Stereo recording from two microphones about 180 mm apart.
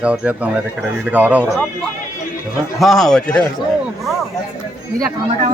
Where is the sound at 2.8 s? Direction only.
Centre (ahead or behind).